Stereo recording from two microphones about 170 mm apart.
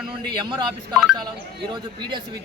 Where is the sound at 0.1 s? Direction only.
30° right (ahead or behind).